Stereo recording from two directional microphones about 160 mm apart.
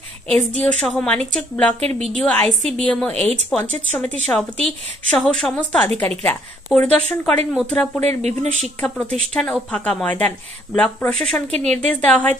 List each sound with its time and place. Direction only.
0.3 s a woman's voice: 5° left (ahead or behind)
11.5 s a woman's voice: 45° right (ahead or behind)
11.8 s speech: 10° left (ahead or behind)